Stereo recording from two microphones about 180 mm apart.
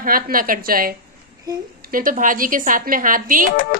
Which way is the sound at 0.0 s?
50° right (ahead or behind).